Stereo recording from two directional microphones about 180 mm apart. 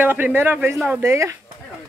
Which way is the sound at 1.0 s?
15° right (ahead or behind).